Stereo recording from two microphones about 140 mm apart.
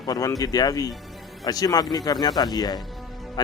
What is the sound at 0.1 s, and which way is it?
A man's voice, 25° left (ahead or behind).